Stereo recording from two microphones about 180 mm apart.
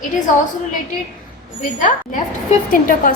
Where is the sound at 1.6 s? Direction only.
45° left (ahead or behind).